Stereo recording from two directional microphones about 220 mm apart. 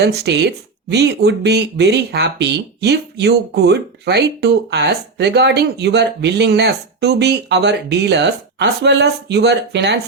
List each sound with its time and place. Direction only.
0.0 s speech: 50° right (ahead or behind)